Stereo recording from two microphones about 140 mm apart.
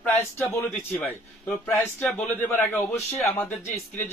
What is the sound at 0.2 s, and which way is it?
A man's voice, 20° left (ahead or behind).